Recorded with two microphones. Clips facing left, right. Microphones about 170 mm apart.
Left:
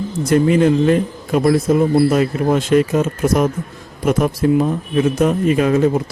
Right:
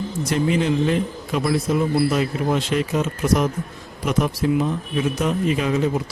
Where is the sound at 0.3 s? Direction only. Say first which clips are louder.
Left 8 dB; 50° left (ahead or behind).